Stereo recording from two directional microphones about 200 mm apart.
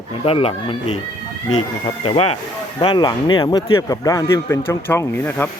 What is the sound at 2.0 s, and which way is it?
Speech, 30° left (ahead or behind).